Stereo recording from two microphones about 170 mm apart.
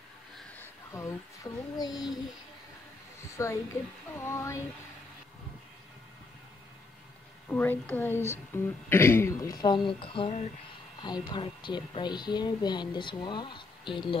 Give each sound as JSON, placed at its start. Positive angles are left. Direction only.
{"t": 0.4, "sound": "a sound", "side_deg": 10}
{"t": 3.4, "sound": "a woman's voice", "side_deg": 20}
{"t": 7.4, "sound": "a woman's voice", "side_deg": 10}